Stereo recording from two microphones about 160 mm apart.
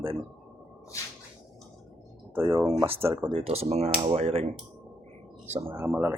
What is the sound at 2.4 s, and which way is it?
Speech, 15° right (ahead or behind).